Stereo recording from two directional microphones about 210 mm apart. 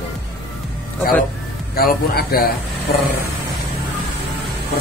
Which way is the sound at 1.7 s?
45° left (ahead or behind).